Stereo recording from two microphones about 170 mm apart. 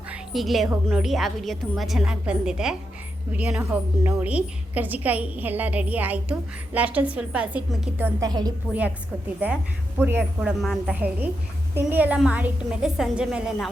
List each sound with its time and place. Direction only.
0.1 s a woman's voice: centre (ahead or behind)
8.3 s a woman's voice: 25° right (ahead or behind)
10.0 s a woman's voice: 10° right (ahead or behind)